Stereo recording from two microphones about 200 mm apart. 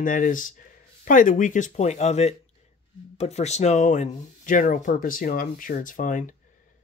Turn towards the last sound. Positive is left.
turn(degrees=40)  # may be behind; listen again after turning